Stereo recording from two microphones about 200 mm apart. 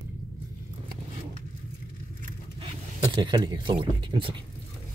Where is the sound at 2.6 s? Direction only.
20° right (ahead or behind).